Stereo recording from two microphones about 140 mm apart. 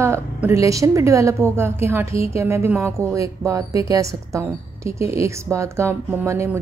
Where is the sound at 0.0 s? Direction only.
20° right (ahead or behind).